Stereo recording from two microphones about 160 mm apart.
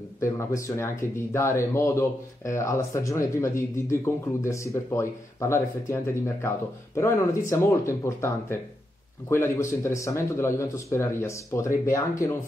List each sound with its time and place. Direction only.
0.2 s speech: 20° left (ahead or behind)